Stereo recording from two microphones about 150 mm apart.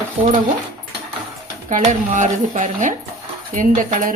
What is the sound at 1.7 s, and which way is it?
Speech, 55° right (ahead or behind).